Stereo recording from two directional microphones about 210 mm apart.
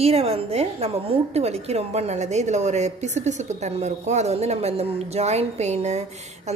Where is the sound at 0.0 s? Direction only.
30° right (ahead or behind).